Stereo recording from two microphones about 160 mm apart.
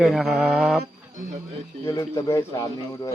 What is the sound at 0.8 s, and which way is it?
Speech, 55° right (ahead or behind).